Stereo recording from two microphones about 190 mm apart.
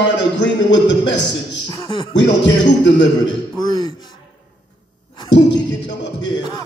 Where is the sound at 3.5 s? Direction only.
20° left (ahead or behind).